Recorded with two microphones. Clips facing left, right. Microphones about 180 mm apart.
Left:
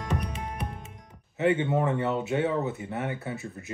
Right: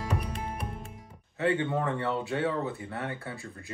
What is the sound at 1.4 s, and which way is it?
Speech, 20° left (ahead or behind).